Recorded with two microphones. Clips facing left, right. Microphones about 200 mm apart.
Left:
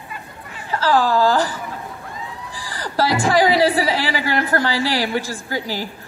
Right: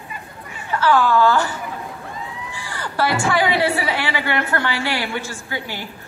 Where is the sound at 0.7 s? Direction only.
35° left (ahead or behind).